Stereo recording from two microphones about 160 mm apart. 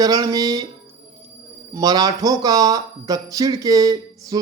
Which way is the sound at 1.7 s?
25° right (ahead or behind).